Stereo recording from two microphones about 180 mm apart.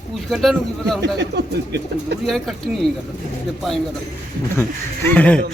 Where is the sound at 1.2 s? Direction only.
70° right (ahead or behind).